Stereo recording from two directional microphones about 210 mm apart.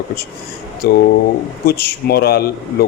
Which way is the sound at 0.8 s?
45° left (ahead or behind).